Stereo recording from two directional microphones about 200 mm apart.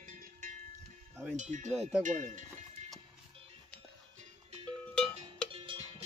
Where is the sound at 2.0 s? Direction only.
40° right (ahead or behind).